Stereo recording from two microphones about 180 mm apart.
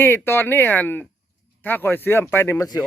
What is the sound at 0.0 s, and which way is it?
Speech, 10° left (ahead or behind).